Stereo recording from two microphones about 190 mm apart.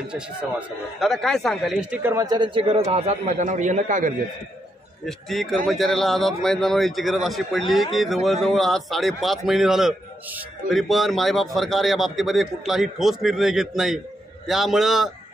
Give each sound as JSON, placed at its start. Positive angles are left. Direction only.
{"t": 0.0, "sound": "speech", "side_deg": -5}
{"t": 5.0, "sound": "a man's voice", "side_deg": 0}